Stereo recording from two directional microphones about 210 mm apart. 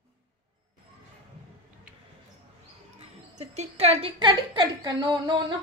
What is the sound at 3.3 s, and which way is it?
A woman's voice, 30° right (ahead or behind).